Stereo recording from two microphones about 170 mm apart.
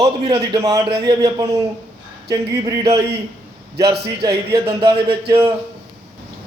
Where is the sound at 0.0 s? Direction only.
30° right (ahead or behind).